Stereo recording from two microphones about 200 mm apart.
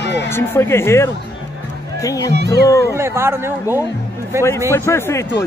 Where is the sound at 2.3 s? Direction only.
55° right (ahead or behind).